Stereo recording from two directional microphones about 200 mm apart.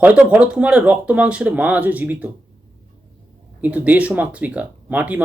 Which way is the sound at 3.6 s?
5° right (ahead or behind).